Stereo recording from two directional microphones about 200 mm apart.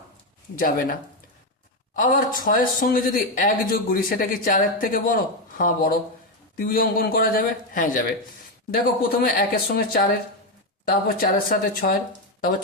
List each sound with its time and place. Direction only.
0.6 s speech: 45° left (ahead or behind)
2.0 s speech: 45° left (ahead or behind)